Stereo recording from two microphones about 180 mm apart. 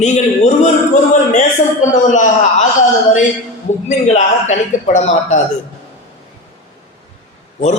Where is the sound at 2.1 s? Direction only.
45° left (ahead or behind).